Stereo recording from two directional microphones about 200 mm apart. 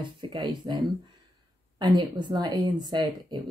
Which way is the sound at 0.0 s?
20° right (ahead or behind).